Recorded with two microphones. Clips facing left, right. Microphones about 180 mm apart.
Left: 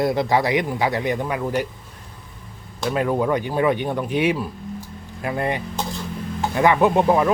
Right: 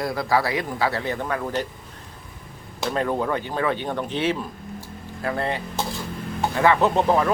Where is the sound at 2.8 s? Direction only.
10° left (ahead or behind).